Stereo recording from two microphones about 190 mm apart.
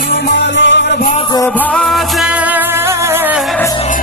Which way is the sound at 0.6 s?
70° left (ahead or behind).